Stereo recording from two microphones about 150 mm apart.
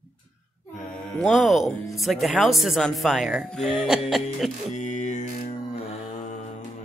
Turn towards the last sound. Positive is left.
turn(degrees=40)  # may be behind; listen again after turning